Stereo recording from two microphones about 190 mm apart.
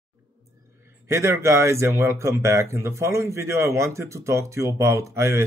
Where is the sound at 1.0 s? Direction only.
15° right (ahead or behind).